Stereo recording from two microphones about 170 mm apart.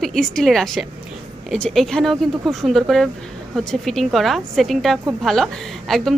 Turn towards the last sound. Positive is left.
turn(degrees=0)  # may be behind; listen again after turning